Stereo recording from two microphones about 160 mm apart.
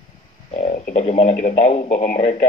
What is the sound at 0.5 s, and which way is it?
Speech, 45° left (ahead or behind).